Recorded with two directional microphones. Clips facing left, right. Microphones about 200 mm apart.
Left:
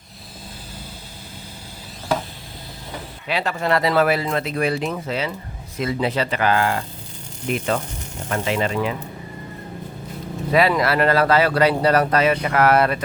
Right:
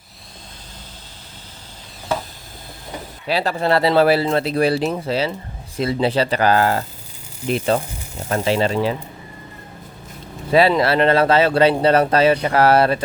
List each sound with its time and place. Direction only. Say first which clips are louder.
3.2 s speech: right 3 dB; 35° right (ahead or behind)
10.5 s speech: right 3 dB; 30° right (ahead or behind)